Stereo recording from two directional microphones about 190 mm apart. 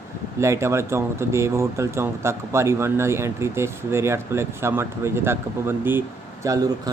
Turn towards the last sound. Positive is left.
turn(degrees=-15)  # may be behind; listen again after turning